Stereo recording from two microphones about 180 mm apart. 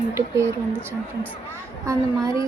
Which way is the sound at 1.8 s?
20° right (ahead or behind).